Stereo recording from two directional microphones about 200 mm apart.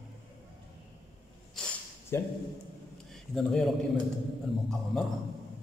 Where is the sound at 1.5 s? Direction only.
10° left (ahead or behind).